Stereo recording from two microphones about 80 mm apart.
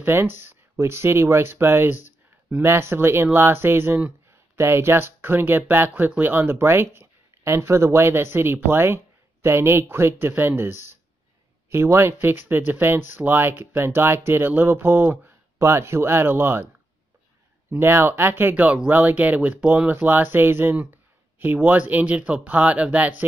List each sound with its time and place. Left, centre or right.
0.0 s speech: right
17.6 s speech: right